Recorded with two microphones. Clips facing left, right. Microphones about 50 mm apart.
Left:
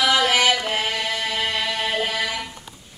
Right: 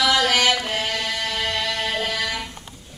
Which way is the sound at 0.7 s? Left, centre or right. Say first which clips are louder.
Left 1 dB; centre.